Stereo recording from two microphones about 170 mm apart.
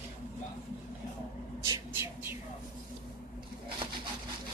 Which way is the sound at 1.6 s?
20° right (ahead or behind).